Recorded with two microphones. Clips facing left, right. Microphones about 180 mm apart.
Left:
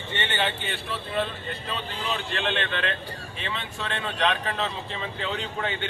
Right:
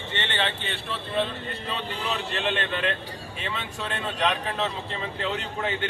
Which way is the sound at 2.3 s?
5° right (ahead or behind).